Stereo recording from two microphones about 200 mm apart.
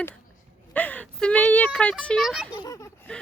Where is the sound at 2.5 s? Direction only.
15° left (ahead or behind).